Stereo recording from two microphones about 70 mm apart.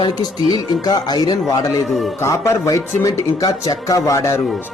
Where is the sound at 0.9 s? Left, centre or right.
Left.